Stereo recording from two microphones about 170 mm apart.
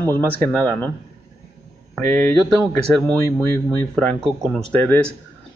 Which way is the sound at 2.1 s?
10° left (ahead or behind).